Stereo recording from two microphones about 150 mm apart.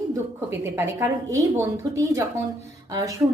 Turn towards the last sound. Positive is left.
turn(degrees=-20)  # may be behind; listen again after turning